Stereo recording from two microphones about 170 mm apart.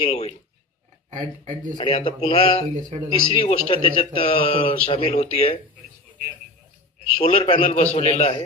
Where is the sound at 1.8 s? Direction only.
30° left (ahead or behind).